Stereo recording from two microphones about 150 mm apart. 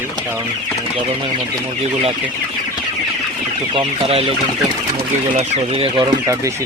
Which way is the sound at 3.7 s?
40° right (ahead or behind).